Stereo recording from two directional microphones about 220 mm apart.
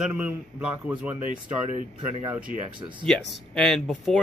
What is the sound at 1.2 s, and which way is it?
Speech, 25° left (ahead or behind).